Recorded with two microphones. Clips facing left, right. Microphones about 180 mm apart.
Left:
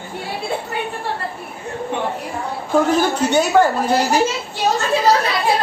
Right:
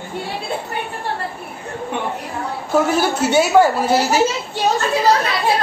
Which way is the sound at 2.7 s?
10° right (ahead or behind).